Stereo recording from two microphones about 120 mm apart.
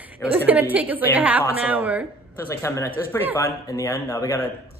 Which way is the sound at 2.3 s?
25° left (ahead or behind).